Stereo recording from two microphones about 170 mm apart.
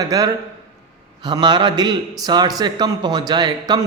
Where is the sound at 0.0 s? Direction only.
20° right (ahead or behind).